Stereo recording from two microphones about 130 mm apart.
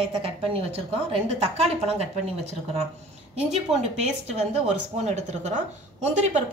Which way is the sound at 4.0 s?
60° right (ahead or behind).